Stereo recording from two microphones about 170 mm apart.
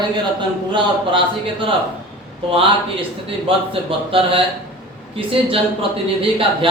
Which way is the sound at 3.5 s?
30° right (ahead or behind).